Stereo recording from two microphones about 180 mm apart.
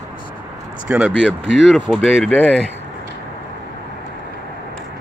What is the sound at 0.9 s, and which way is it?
Speech, 10° right (ahead or behind).